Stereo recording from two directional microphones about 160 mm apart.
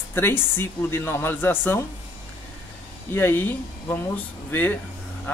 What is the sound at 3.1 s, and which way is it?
Speech, 15° left (ahead or behind).